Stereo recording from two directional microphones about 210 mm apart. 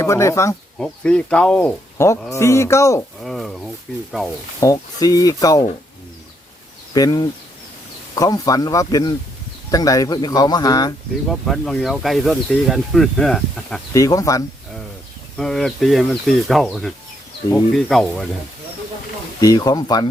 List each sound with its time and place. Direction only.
0.0 s speech: 15° left (ahead or behind)
3.2 s speech: centre (ahead or behind)
4.6 s speech: 15° left (ahead or behind)
6.9 s speech: 20° left (ahead or behind)
11.3 s speech: centre (ahead or behind)
13.9 s speech: 15° left (ahead or behind)
15.4 s speech: centre (ahead or behind)
19.4 s speech: 15° left (ahead or behind)